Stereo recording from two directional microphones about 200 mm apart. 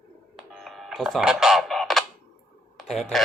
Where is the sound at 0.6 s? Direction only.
Centre (ahead or behind).